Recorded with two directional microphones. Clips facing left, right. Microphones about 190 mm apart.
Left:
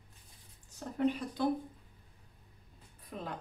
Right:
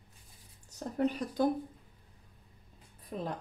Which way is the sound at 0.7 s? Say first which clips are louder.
Even; 40° right (ahead or behind).